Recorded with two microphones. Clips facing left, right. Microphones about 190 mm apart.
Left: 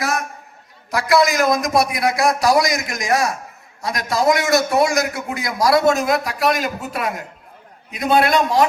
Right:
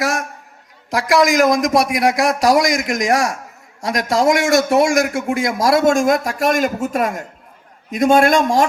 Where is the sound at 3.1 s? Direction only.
90° right.